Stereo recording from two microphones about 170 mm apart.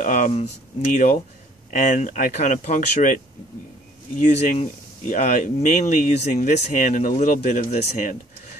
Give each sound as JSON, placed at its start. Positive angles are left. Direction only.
{"t": 0.0, "sound": "speech", "side_deg": 50}
{"t": 1.7, "sound": "speech", "side_deg": 45}
{"t": 4.2, "sound": "speech", "side_deg": 50}